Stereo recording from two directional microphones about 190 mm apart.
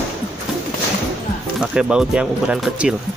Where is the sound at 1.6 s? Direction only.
5° right (ahead or behind).